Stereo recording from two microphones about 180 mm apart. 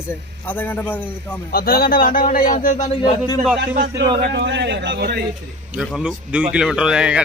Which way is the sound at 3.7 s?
50° right (ahead or behind).